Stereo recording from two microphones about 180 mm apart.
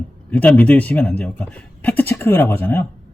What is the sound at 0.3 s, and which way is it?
Speech, 10° left (ahead or behind).